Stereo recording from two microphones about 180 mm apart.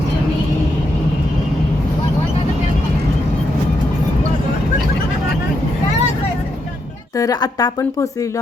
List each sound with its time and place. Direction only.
7.2 s speech: 20° left (ahead or behind)